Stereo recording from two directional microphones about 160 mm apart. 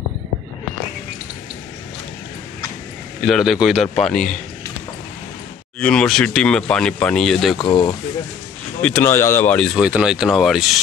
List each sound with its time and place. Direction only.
3.3 s speech: centre (ahead or behind)
5.8 s speech: 5° left (ahead or behind)
7.5 s speech: 30° left (ahead or behind)
8.8 s speech: 15° left (ahead or behind)
9.8 s speech: 5° right (ahead or behind)